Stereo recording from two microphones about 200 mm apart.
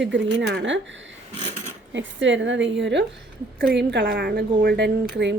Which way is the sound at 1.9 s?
65° right (ahead or behind).